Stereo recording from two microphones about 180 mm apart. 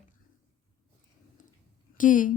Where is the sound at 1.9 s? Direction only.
45° left (ahead or behind).